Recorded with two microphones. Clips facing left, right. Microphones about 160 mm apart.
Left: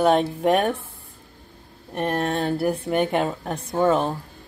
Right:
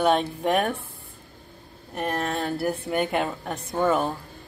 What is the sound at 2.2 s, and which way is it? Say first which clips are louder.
Speech: left 4 dB; 35° left (ahead or behind).